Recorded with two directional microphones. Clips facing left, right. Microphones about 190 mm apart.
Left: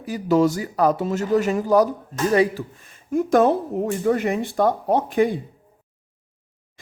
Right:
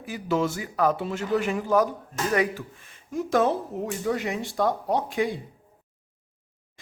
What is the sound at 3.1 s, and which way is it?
Speech, 55° left (ahead or behind).